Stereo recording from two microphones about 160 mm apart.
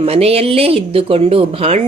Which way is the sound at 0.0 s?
40° right (ahead or behind).